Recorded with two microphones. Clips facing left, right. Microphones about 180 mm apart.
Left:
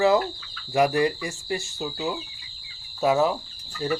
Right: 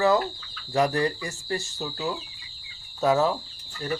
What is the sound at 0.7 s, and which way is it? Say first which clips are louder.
Speech: left 2 dB; 15° left (ahead or behind).